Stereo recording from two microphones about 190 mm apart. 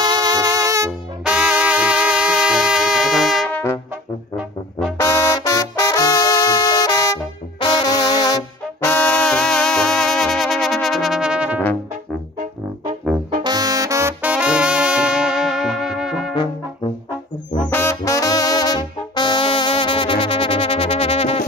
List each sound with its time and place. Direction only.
0.0 s music: 20° right (ahead or behind)
1.2 s music: 5° right (ahead or behind)
4.4 s trombone: 5° right (ahead or behind)
4.9 s music: 15° left (ahead or behind)
7.6 s brass instrument: 20° left (ahead or behind); by 11.6 s 5° right (ahead or behind)
13.4 s brass instrument: 20° right (ahead or behind); by 16.3 s centre (ahead or behind)
17.6 s brass instrument: 15° left (ahead or behind); by 21.5 s 30° left (ahead or behind)